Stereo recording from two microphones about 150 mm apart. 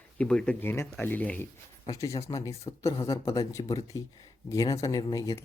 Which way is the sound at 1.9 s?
20° left (ahead or behind).